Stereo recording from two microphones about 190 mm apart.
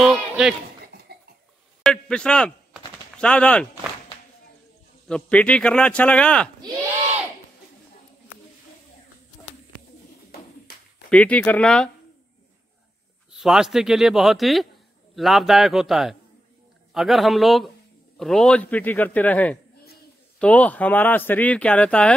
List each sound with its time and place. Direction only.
0.0 s speech: 5° right (ahead or behind)
1.1 s cough: 55° right (ahead or behind)
1.8 s a sound: 5° left (ahead or behind)
3.2 s speech: 5° left (ahead or behind)
5.0 s speech: 5° left (ahead or behind)
11.1 s speech: 5° left (ahead or behind)
13.3 s speech: centre (ahead or behind)